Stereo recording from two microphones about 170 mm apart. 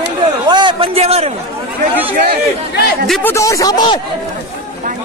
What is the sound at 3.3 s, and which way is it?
Speech, 20° left (ahead or behind).